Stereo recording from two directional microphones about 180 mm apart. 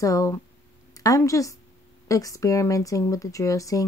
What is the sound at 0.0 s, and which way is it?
A woman's voice, 15° left (ahead or behind).